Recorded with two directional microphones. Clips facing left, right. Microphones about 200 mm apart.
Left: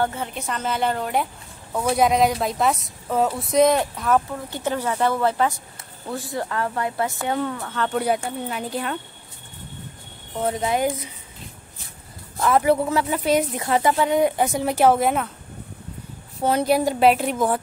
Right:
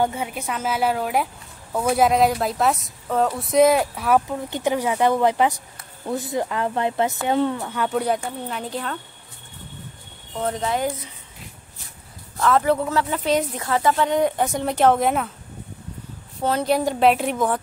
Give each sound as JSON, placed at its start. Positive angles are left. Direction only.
{"t": 0.0, "sound": "speech", "side_deg": -10}
{"t": 7.7, "sound": "speech", "side_deg": -10}
{"t": 8.5, "sound": "speech", "side_deg": 5}
{"t": 10.3, "sound": "speech", "side_deg": 10}
{"t": 12.4, "sound": "speech", "side_deg": 15}
{"t": 16.4, "sound": "speech", "side_deg": 10}